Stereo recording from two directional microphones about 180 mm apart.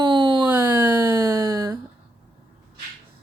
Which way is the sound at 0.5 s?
10° right (ahead or behind).